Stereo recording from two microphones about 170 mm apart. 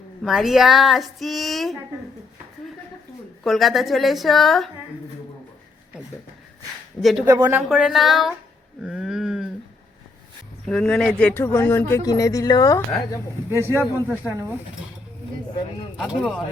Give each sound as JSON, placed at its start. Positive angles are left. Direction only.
{"t": 0.2, "sound": "speech", "side_deg": 0}
{"t": 3.4, "sound": "speech", "side_deg": 0}
{"t": 7.0, "sound": "speech", "side_deg": 0}
{"t": 8.8, "sound": "a sound", "side_deg": -5}
{"t": 10.7, "sound": "speech", "side_deg": 5}
{"t": 13.5, "sound": "speech", "side_deg": -15}
{"t": 14.3, "sound": "speech", "side_deg": 10}
{"t": 16.0, "sound": "speech", "side_deg": -5}